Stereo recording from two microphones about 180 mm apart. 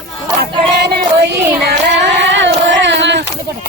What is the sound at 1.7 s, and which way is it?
Singing, 80° right.